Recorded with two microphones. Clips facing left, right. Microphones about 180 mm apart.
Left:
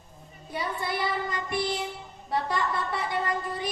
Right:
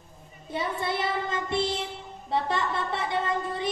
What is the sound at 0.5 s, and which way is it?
Child singing, 25° right (ahead or behind).